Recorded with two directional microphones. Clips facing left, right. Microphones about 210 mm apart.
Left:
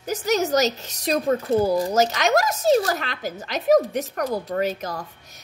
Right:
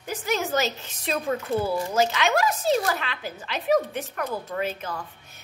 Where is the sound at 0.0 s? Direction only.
40° left (ahead or behind).